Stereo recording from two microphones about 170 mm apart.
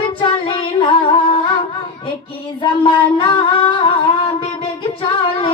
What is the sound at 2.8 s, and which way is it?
Singing, 30° left (ahead or behind).